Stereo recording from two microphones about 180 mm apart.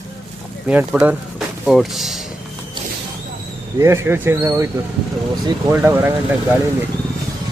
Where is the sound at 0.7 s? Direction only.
10° right (ahead or behind).